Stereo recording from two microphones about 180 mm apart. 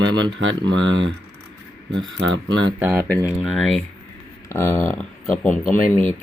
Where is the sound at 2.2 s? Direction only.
90° right.